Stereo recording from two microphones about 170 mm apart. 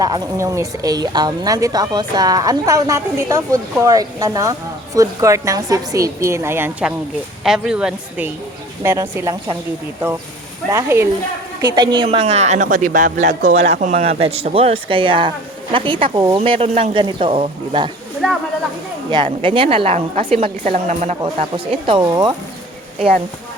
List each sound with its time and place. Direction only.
0.0 s a woman's voice: 20° right (ahead or behind)
10.7 s a woman's voice: 15° right (ahead or behind)
12.0 s a man's voice: 40° right (ahead or behind)
19.1 s speech: 30° right (ahead or behind)